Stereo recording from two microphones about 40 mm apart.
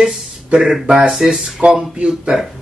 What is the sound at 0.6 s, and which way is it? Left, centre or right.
Speech, centre.